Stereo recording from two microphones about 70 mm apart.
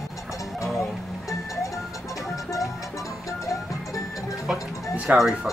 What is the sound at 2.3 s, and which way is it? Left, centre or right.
Music, left.